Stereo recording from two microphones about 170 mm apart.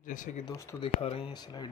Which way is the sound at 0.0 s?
50° left (ahead or behind).